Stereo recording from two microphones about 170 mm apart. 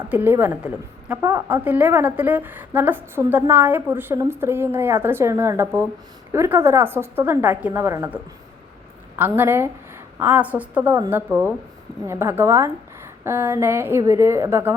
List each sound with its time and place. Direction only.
0.0 s a woman's voice: 10° right (ahead or behind)